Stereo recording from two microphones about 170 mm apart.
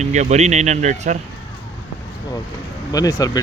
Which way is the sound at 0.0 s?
45° right (ahead or behind).